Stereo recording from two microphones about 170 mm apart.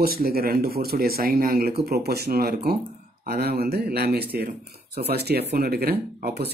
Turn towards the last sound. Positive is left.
turn(degrees=-70)  # may be behind; listen again after turning